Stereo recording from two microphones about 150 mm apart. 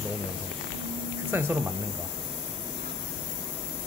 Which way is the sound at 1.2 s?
15° right (ahead or behind).